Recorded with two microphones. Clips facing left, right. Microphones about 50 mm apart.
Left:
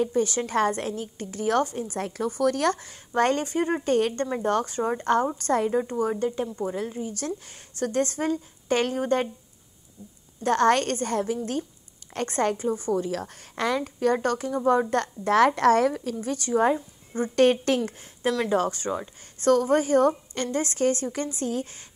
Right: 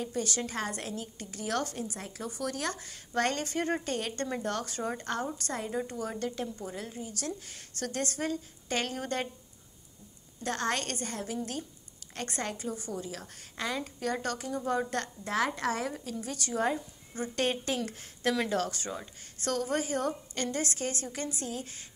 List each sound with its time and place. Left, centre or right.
0.0 s a woman's voice: left
1.6 s a woman's voice: left
2.0 s speech: left
3.2 s a woman's voice: left
3.8 s a woman's voice: left
5.7 s a woman's voice: left
6.6 s a woman's voice: left
10.4 s a woman's voice: left
13.0 s speech: left
13.9 s a woman's voice: left
15.2 s a woman's voice: left
16.2 s a woman's voice: left
18.5 s a woman's voice: left